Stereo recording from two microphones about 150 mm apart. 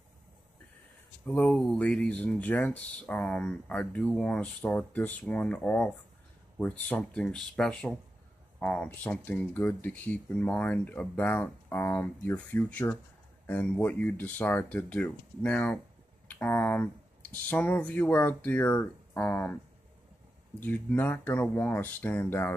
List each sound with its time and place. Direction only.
1.2 s speech: 10° left (ahead or behind)
16.3 s a sound: 15° left (ahead or behind)
17.5 s speech: 10° left (ahead or behind)
20.6 s speech: 15° left (ahead or behind)